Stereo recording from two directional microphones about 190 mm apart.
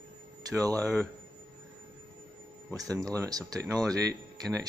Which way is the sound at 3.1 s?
20° right (ahead or behind).